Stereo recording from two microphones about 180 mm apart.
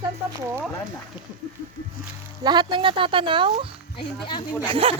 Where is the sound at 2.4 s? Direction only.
25° right (ahead or behind).